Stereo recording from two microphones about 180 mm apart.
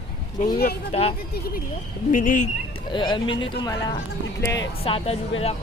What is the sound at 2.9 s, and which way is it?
Speech, 25° left (ahead or behind).